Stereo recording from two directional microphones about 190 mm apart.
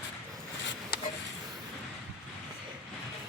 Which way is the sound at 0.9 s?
55° left (ahead or behind).